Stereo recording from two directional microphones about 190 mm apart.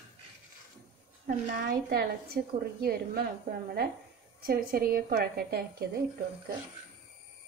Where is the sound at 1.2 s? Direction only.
55° right (ahead or behind).